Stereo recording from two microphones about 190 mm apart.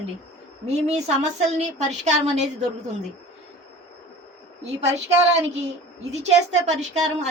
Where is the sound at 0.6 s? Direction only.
35° right (ahead or behind).